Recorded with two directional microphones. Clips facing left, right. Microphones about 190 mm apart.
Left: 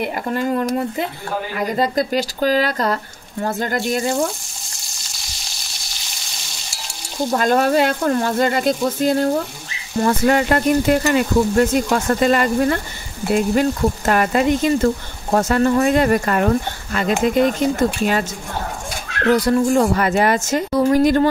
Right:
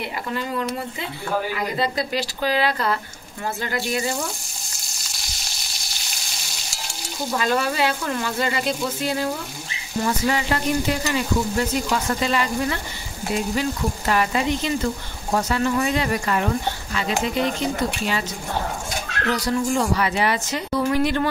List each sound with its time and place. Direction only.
0.0 s speech: 50° left (ahead or behind)
7.3 s speech: 50° left (ahead or behind)
19.3 s speech: 50° left (ahead or behind)